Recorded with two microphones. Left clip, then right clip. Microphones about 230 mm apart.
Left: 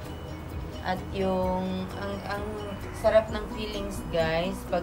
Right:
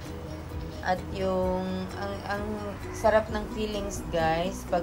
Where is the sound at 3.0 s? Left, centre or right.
Centre.